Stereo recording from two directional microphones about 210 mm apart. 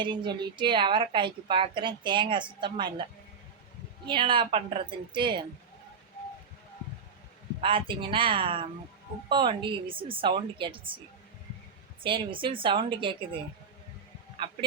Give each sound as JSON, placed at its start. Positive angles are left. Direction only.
{"t": 0.0, "sound": "a woman's voice", "side_deg": -25}
{"t": 4.0, "sound": "a woman's voice", "side_deg": -25}
{"t": 7.6, "sound": "a woman's voice", "side_deg": -25}
{"t": 12.0, "sound": "a woman's voice", "side_deg": -25}